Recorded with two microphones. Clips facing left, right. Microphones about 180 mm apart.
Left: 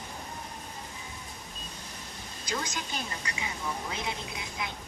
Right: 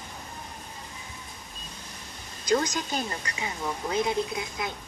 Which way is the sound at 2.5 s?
40° right (ahead or behind).